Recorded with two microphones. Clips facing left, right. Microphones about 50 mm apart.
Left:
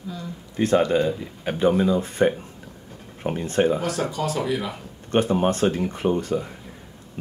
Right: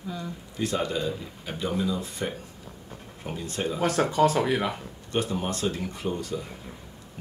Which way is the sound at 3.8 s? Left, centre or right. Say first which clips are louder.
Right 3 dB; right.